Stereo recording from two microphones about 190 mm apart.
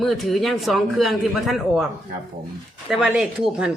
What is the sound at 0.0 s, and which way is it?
A woman's voice, centre (ahead or behind).